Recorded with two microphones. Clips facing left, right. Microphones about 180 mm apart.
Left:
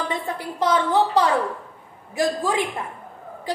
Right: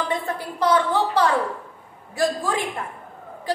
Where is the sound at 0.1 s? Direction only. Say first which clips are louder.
Right 1 dB; 20° left (ahead or behind).